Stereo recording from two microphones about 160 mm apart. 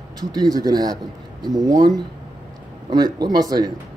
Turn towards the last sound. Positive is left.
turn(degrees=-25)  # may be behind; listen again after turning